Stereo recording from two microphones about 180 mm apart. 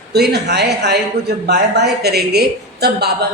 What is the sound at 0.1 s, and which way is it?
Speech, 65° right (ahead or behind).